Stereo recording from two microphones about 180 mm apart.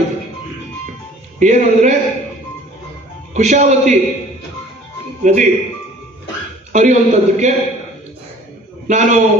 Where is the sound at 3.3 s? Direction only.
40° right (ahead or behind).